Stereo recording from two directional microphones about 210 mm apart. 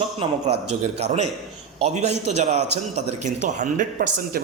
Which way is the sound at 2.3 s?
30° right (ahead or behind).